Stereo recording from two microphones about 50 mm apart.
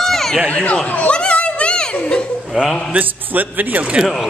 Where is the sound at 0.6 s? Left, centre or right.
Centre.